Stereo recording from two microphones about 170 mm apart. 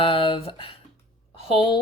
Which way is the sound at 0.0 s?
30° left (ahead or behind).